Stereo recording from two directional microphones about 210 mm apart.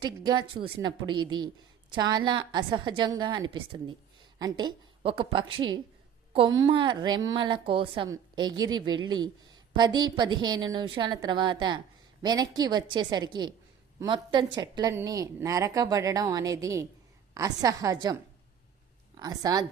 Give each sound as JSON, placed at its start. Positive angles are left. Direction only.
{"t": 0.0, "sound": "a woman's voice", "side_deg": -20}
{"t": 19.2, "sound": "speech", "side_deg": -20}